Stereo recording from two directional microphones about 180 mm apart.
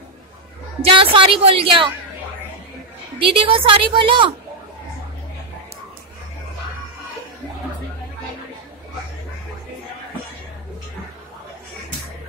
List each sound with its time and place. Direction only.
0.8 s a woman's voice: 30° right (ahead or behind)
3.2 s a woman's voice: 30° right (ahead or behind)